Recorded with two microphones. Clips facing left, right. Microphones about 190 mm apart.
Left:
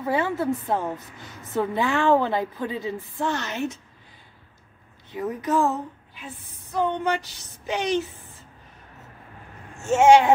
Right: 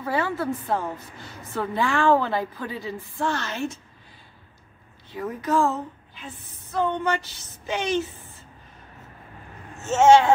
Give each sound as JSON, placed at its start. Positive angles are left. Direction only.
{"t": 0.0, "sound": "a woman's voice", "side_deg": 20}
{"t": 5.1, "sound": "a woman's voice", "side_deg": 20}
{"t": 9.8, "sound": "a woman's voice", "side_deg": 10}